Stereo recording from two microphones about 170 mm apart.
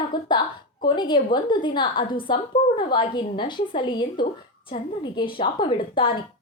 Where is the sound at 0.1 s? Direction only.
25° left (ahead or behind).